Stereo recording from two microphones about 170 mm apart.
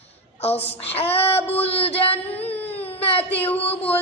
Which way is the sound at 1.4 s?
10° left (ahead or behind).